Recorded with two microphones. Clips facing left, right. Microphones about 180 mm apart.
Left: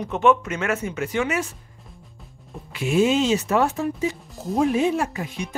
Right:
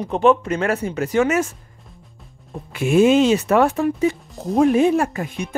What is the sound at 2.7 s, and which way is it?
Speech, 50° right (ahead or behind).